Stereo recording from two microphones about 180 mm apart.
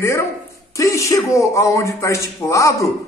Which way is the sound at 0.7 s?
15° left (ahead or behind).